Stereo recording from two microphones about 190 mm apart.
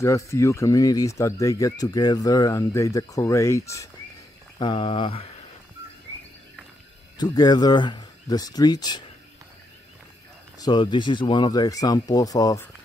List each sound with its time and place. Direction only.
0.0 s speech: 15° left (ahead or behind)
4.6 s speech: 25° left (ahead or behind)
7.2 s speech: 20° left (ahead or behind)
10.6 s speech: 25° left (ahead or behind)